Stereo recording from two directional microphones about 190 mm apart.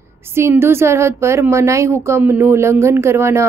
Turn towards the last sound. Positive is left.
turn(degrees=-15)  # may be behind; listen again after turning